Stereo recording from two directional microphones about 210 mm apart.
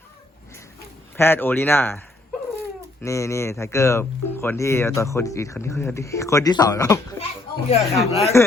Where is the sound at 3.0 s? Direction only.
15° left (ahead or behind).